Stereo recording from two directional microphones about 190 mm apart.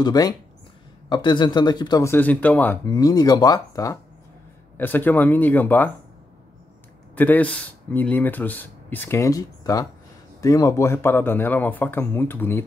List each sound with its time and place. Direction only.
0.0 s speech: 20° left (ahead or behind)
7.2 s speech: 10° left (ahead or behind)